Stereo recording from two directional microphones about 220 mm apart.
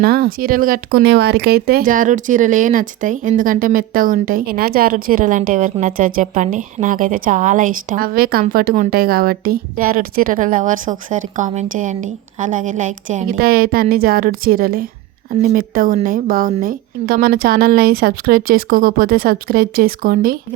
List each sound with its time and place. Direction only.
0.0 s a woman's voice: 45° right (ahead or behind)